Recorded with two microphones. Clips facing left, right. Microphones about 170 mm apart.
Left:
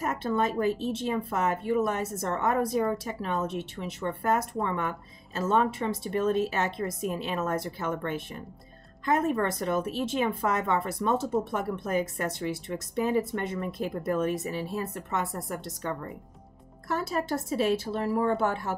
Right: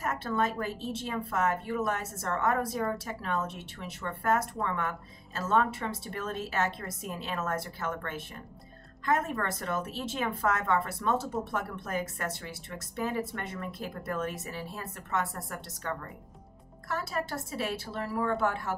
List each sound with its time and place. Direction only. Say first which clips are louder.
0.0 s a woman's voice: left 3 dB; 20° left (ahead or behind)